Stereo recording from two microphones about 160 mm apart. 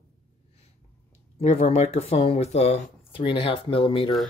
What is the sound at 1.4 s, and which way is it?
Speech, 45° left (ahead or behind).